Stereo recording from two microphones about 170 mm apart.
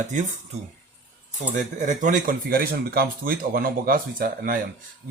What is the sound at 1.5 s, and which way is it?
Speech, 45° right (ahead or behind).